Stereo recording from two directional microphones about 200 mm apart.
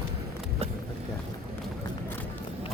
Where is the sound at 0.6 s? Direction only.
30° right (ahead or behind).